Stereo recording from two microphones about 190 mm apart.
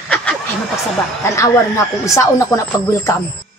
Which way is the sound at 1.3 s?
15° left (ahead or behind).